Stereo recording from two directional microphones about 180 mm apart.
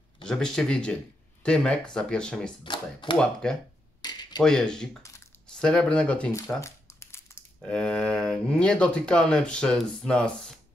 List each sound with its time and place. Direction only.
0.3 s speech: 5° left (ahead or behind)
2.6 s speech: 25° left (ahead or behind)
3.2 s speech: 5° left (ahead or behind)
4.0 s a sound: 25° left (ahead or behind)
4.4 s speech: 5° left (ahead or behind)
6.6 s a sound: 15° left (ahead or behind)
7.6 s speech: 5° left (ahead or behind)